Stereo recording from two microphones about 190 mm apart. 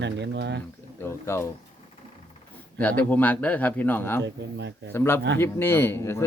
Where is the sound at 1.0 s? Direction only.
15° left (ahead or behind).